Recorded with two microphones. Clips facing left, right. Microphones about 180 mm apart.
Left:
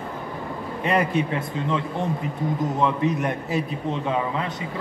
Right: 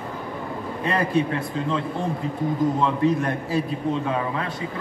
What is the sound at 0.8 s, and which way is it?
Speech, 20° left (ahead or behind).